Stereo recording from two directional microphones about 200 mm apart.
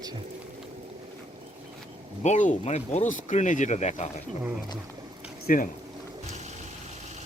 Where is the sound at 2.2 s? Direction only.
35° left (ahead or behind).